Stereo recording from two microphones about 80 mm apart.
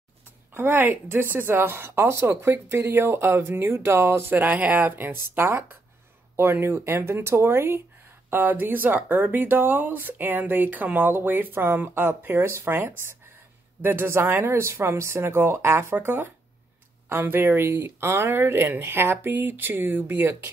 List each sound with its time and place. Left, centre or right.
0.6 s speech: right